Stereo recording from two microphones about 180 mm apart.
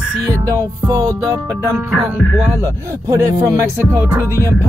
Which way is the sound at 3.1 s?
15° right (ahead or behind).